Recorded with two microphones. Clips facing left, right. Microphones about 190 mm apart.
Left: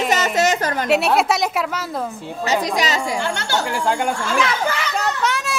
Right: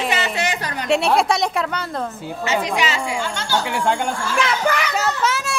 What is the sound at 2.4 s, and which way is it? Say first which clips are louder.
Speech: left 1 dB; 35° left (ahead or behind).